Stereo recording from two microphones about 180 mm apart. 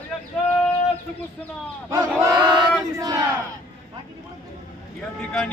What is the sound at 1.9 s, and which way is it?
Battle cry, 20° right (ahead or behind).